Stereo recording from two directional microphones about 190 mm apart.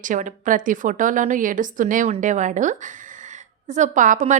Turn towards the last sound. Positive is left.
turn(degrees=-40)  # may be behind; listen again after turning